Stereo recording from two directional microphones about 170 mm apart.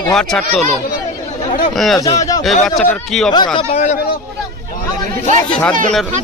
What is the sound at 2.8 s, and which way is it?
Speech, 5° left (ahead or behind).